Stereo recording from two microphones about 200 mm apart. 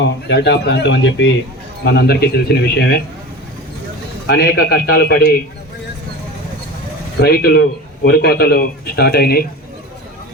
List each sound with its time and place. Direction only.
0.0 s speech: 60° left (ahead or behind)
4.3 s speech: 55° left (ahead or behind)
7.2 s speech: 50° left (ahead or behind)